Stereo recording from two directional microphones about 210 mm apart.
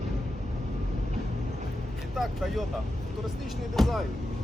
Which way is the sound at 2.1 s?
Centre (ahead or behind).